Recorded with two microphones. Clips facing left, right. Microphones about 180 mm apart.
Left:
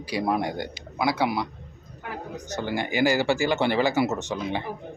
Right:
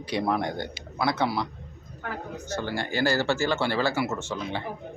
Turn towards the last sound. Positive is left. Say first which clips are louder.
# left 3 dB
turn(degrees=15)  # may be behind; listen again after turning